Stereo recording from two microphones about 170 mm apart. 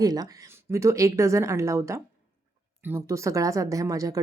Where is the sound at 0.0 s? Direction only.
20° right (ahead or behind).